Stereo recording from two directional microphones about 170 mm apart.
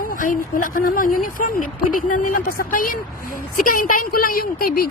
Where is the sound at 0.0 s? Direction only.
55° left (ahead or behind).